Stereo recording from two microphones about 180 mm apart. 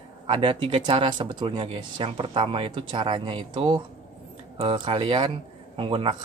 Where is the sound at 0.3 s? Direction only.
30° right (ahead or behind).